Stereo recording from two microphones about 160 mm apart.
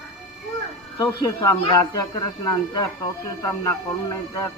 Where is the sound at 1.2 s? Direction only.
20° left (ahead or behind).